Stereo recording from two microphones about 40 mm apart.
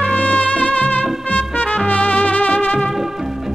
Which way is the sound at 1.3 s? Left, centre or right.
Left.